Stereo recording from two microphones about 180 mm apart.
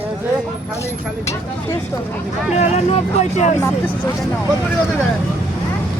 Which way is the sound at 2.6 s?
40° left (ahead or behind).